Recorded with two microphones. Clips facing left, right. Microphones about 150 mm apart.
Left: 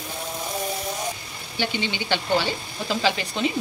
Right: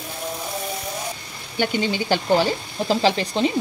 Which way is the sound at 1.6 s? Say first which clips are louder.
Right 5 dB; 40° right (ahead or behind).